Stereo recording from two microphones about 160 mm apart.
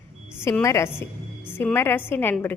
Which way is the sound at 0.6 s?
20° left (ahead or behind).